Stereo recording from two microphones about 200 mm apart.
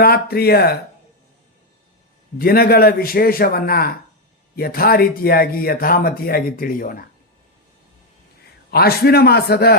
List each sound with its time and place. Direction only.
0.0 s speech: 50° left (ahead or behind)
2.4 s speech: 50° left (ahead or behind)
8.7 s speech: 50° left (ahead or behind)